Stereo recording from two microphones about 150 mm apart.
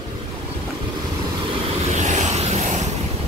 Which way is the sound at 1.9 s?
50° right (ahead or behind).